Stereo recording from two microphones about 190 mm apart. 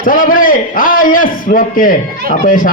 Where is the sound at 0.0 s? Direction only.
45° left (ahead or behind).